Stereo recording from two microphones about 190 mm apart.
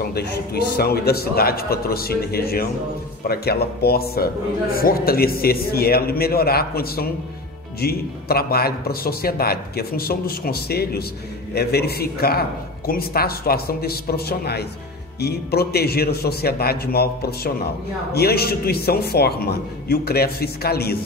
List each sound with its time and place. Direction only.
0.0 s a man's voice: 55° left (ahead or behind)